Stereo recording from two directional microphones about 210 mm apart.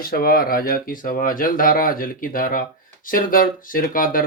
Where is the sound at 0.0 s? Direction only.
45° left (ahead or behind).